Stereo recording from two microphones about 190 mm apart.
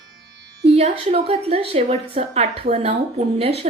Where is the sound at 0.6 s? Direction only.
30° right (ahead or behind).